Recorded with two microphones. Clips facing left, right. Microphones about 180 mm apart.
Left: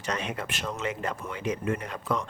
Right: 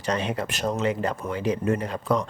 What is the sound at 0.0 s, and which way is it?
Speech, 30° right (ahead or behind).